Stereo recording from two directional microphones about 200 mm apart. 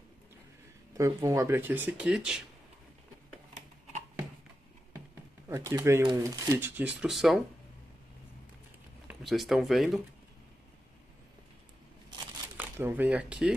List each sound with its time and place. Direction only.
0.9 s speech: 15° right (ahead or behind)
5.5 s speech: 15° right (ahead or behind)
9.0 s speech: centre (ahead or behind)
12.5 s speech: 10° right (ahead or behind)